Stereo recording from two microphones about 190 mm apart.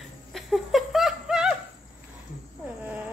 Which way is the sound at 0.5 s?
Centre (ahead or behind).